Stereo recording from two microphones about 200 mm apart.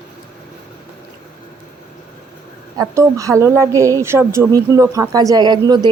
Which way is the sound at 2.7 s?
15° right (ahead or behind).